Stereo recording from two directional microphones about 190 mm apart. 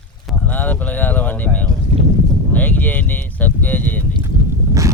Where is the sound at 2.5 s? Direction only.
10° left (ahead or behind).